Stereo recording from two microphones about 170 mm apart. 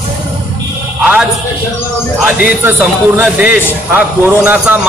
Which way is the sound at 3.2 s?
10° right (ahead or behind).